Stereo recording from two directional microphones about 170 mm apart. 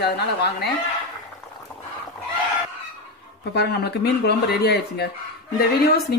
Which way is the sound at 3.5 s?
70° left (ahead or behind).